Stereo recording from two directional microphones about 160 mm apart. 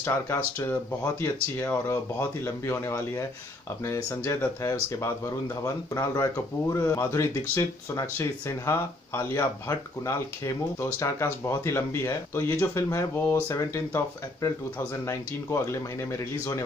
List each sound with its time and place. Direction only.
0.0 s speech: 20° left (ahead or behind)